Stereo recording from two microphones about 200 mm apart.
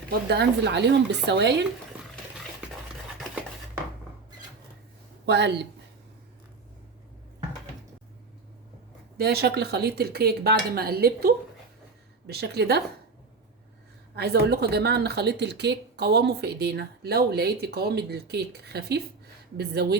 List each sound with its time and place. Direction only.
0.3 s speech: 60° right (ahead or behind)
5.2 s speech: 60° right (ahead or behind)
9.1 s speech: 50° right (ahead or behind)
14.2 s speech: 55° right (ahead or behind)